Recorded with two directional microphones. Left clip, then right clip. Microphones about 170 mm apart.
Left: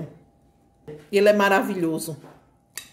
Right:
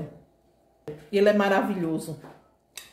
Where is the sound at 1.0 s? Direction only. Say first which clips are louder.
Left 4 dB; 45° left (ahead or behind).